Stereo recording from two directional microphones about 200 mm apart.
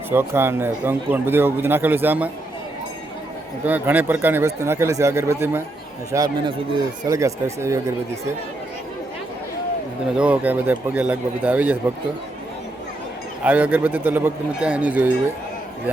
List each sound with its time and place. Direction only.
0.1 s speech: 10° right (ahead or behind)
3.7 s speech: 10° right (ahead or behind)
10.2 s speech: 5° right (ahead or behind)
13.4 s speech: 10° right (ahead or behind)